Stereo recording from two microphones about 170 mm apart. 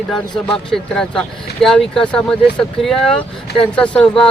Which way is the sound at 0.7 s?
5° left (ahead or behind).